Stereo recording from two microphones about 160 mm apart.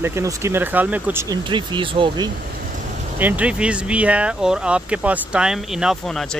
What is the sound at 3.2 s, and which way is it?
Speech, 10° right (ahead or behind).